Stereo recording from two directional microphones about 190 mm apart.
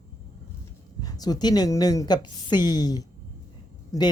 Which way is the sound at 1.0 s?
20° left (ahead or behind).